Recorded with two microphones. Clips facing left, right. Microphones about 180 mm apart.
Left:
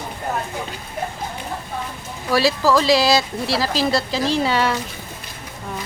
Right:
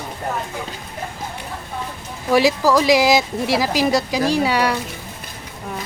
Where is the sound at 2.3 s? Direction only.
15° right (ahead or behind).